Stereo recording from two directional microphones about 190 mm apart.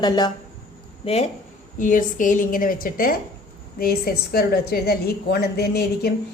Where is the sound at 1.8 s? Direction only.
45° left (ahead or behind).